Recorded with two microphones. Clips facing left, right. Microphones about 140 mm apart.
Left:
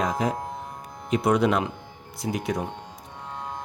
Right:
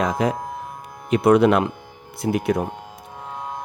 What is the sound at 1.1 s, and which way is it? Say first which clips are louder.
Speech: right 6 dB; 60° right (ahead or behind).